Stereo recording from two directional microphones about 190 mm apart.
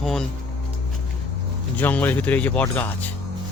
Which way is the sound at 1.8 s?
10° left (ahead or behind).